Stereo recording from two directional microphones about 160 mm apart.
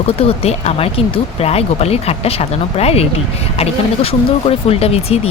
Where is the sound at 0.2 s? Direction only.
40° left (ahead or behind).